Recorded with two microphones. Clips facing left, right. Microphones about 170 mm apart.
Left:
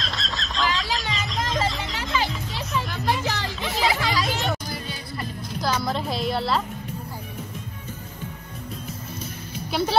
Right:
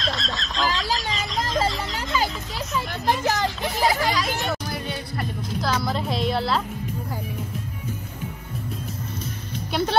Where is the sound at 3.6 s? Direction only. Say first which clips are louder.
Left 2 dB; 40° right (ahead or behind).